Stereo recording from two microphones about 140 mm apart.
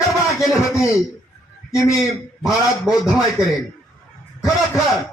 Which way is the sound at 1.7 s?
5° right (ahead or behind).